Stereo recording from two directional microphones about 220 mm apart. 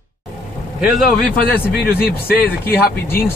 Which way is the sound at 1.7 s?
45° left (ahead or behind).